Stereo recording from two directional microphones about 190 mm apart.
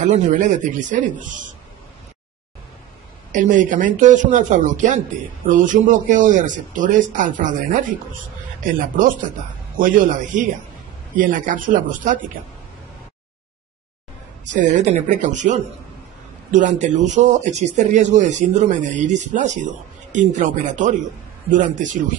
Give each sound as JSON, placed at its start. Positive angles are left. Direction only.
{"t": 0.1, "sound": "speech", "side_deg": -40}
{"t": 3.3, "sound": "speech", "side_deg": -40}
{"t": 9.8, "sound": "speech", "side_deg": -45}
{"t": 14.5, "sound": "speech", "side_deg": -40}